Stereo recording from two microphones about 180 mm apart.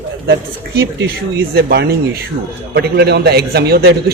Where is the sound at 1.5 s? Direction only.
65° right (ahead or behind).